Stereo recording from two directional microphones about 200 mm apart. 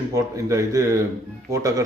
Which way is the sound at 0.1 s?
15° right (ahead or behind).